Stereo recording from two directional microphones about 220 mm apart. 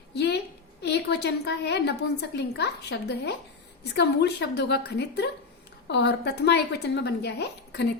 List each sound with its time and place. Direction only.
0.1 s a woman's voice: 50° left (ahead or behind)